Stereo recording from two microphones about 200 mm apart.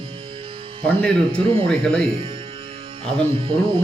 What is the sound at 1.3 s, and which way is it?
Speech, 25° right (ahead or behind).